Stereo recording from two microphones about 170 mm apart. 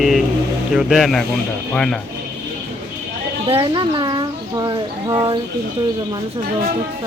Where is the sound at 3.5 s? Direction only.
30° right (ahead or behind).